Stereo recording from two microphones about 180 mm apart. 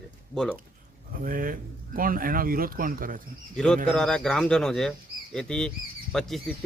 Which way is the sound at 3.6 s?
5° left (ahead or behind).